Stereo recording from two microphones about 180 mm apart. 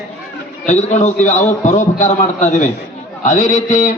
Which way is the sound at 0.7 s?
40° left (ahead or behind).